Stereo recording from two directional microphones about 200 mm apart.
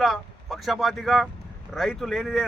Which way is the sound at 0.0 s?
Centre (ahead or behind).